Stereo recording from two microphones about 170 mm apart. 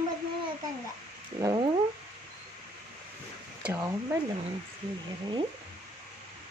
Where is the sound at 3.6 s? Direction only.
15° right (ahead or behind).